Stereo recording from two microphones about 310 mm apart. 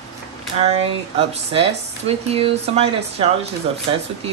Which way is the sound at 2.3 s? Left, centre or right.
Centre.